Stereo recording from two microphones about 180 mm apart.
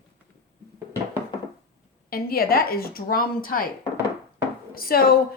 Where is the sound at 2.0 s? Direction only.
55° left (ahead or behind).